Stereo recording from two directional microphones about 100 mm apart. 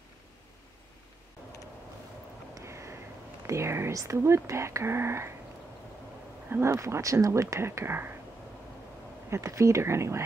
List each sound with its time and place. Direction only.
2.5 s a sound: 30° right (ahead or behind)
3.4 s speech: 25° right (ahead or behind)
6.5 s speech: 25° right (ahead or behind)
9.3 s speech: 30° right (ahead or behind)